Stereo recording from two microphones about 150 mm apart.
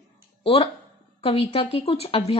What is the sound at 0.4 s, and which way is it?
Speech, 40° left (ahead or behind).